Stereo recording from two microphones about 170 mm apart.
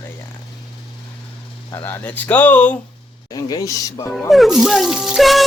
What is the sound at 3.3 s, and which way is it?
Speech, 20° left (ahead or behind).